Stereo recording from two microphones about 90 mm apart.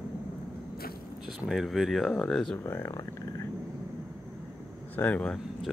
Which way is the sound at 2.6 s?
30° left (ahead or behind).